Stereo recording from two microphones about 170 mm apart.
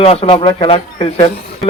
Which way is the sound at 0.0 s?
35° left (ahead or behind).